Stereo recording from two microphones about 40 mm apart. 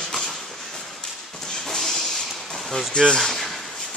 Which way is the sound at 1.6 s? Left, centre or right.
Centre.